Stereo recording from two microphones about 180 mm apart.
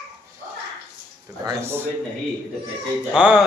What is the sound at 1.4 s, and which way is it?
Speech, 15° right (ahead or behind).